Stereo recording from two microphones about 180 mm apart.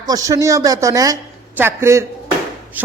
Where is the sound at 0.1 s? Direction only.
15° right (ahead or behind).